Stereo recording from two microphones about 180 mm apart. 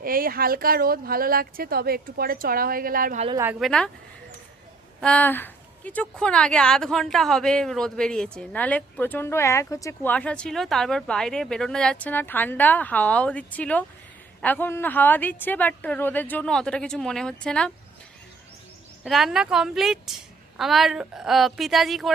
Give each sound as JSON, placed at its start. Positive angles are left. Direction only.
{"t": 0.0, "sound": "speech", "side_deg": -55}
{"t": 3.3, "sound": "speech", "side_deg": -10}
{"t": 3.6, "sound": "a woman's voice", "side_deg": 5}
{"t": 4.9, "sound": "a woman's voice", "side_deg": 5}
{"t": 19.0, "sound": "a woman's voice", "side_deg": 0}